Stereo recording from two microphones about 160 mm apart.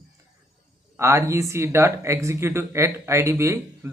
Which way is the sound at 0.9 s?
15° right (ahead or behind).